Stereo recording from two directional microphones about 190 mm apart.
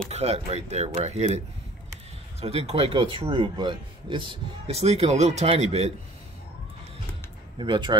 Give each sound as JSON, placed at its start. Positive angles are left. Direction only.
{"t": 0.1, "sound": "speech", "side_deg": -35}
{"t": 2.4, "sound": "speech", "side_deg": -35}
{"t": 7.5, "sound": "speech", "side_deg": -25}